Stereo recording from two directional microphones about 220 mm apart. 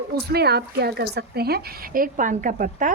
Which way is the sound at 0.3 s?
45° right (ahead or behind).